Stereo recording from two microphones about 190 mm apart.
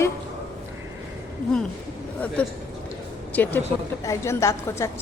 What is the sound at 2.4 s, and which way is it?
A woman's voice, 5° left (ahead or behind).